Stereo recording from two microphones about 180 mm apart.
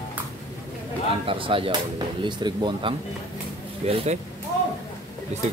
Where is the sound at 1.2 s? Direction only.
30° right (ahead or behind).